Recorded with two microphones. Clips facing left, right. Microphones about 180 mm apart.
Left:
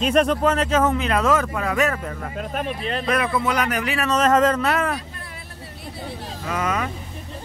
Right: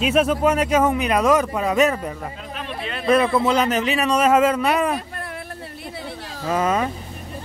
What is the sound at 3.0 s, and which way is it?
Speech, 30° right (ahead or behind).